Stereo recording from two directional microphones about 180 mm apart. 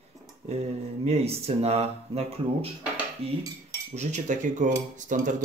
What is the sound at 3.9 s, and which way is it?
Speech, 40° right (ahead or behind).